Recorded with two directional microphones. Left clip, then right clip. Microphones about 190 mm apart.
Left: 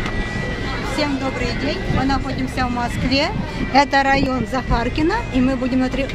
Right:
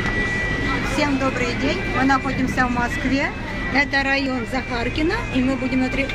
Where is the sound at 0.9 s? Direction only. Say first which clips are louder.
Left 1 dB; centre (ahead or behind).